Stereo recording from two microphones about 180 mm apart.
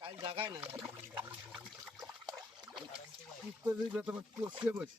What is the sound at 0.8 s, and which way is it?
Water, 10° right (ahead or behind).